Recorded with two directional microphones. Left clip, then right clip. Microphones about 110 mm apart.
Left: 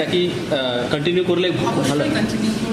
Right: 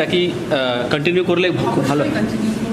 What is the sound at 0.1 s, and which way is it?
A man's voice, 45° right (ahead or behind).